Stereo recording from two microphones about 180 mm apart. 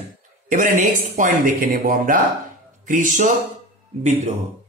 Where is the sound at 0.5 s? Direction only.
45° right (ahead or behind).